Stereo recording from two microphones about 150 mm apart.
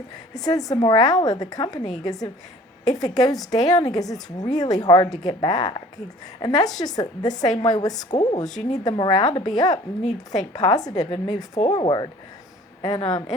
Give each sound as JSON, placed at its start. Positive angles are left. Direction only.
{"t": 0.3, "sound": "a woman's voice", "side_deg": 25}